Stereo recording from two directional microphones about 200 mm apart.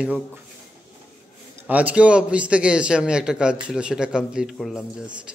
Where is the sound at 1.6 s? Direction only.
5° right (ahead or behind).